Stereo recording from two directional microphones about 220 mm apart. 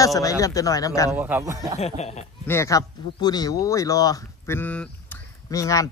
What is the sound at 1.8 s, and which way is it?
Speech, 30° left (ahead or behind).